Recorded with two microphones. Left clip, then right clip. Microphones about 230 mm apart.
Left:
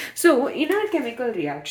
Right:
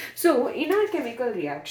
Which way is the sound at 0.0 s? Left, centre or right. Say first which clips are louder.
Left 3 dB; left.